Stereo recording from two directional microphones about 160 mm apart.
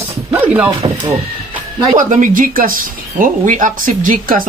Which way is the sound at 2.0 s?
55° right (ahead or behind).